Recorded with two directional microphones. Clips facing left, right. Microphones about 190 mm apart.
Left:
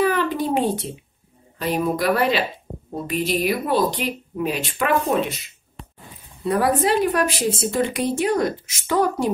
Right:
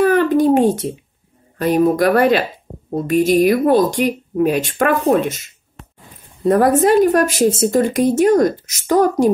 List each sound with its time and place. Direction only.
0.0 s a sound: 50° right (ahead or behind)
1.6 s speech: 50° right (ahead or behind)
6.4 s speech: 45° right (ahead or behind)